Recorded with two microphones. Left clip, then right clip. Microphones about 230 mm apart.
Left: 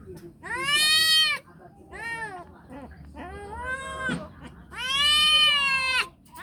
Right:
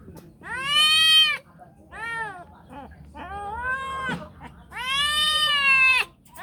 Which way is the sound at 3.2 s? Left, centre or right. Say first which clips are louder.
Right 6 dB; centre.